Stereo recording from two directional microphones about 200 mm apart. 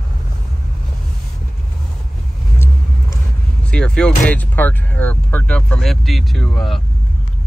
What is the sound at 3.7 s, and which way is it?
Speech, 5° left (ahead or behind).